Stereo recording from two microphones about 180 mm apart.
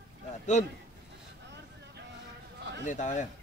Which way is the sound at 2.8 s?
45° left (ahead or behind).